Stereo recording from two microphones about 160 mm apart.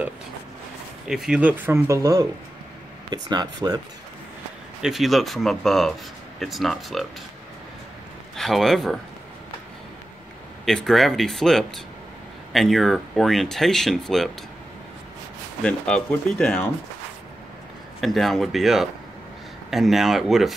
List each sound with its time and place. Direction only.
1.0 s speech: 5° right (ahead or behind); by 3.8 s 25° right (ahead or behind)
4.8 s speech: centre (ahead or behind)
8.4 s speech: centre (ahead or behind)
10.6 s speech: centre (ahead or behind)
15.6 s speech: 5° left (ahead or behind)
18.0 s speech: centre (ahead or behind)